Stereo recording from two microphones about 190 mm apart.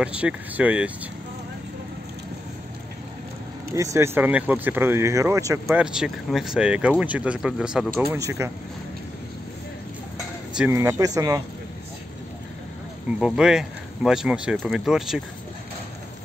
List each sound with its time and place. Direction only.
0.0 s speech: 5° right (ahead or behind)
3.7 s speech: 15° right (ahead or behind)
5.8 s speech: 5° right (ahead or behind)
10.5 s speech: 10° right (ahead or behind)
13.2 s speech: 5° right (ahead or behind)